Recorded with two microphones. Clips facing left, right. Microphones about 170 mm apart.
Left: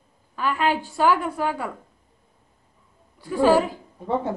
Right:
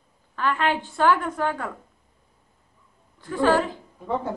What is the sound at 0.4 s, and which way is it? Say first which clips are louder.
A woman's voice: left 1 dB; 10° left (ahead or behind).